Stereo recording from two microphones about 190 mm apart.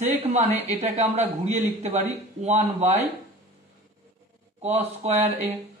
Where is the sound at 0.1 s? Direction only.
35° right (ahead or behind).